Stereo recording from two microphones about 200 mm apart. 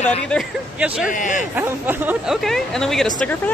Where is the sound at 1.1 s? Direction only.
40° left (ahead or behind).